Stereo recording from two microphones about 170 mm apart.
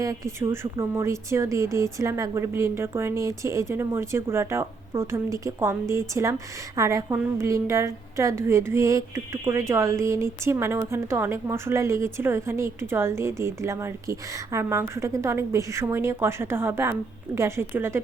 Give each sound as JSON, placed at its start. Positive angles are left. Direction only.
{"t": 0.0, "sound": "a woman's voice", "side_deg": -20}